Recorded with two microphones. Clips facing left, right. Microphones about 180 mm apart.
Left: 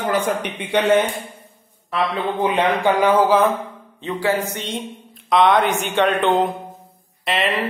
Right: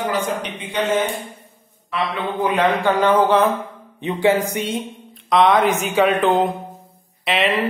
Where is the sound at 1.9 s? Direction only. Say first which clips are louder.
Left 2 dB; 30° left (ahead or behind).